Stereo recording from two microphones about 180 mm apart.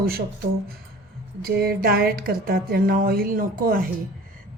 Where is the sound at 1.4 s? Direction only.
60° right (ahead or behind).